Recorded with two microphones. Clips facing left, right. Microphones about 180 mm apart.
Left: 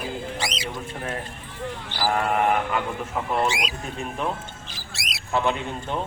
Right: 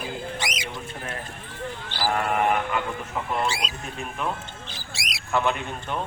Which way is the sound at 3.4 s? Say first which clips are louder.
Left 4 dB; 15° left (ahead or behind).